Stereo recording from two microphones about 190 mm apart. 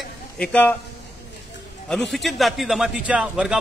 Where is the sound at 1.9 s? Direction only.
Centre (ahead or behind).